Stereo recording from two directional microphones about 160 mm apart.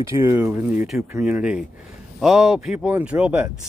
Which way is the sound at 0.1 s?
15° right (ahead or behind).